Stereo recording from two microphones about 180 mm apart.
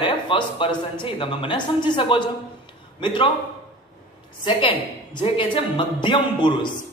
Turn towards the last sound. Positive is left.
turn(degrees=25)  # may be behind; listen again after turning